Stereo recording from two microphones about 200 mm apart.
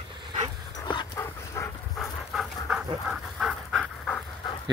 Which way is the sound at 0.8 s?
20° left (ahead or behind).